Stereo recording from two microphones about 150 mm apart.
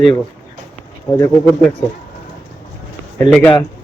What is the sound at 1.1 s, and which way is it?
Speech, 20° left (ahead or behind).